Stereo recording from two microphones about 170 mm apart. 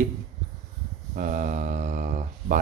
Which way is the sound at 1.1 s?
50° right (ahead or behind).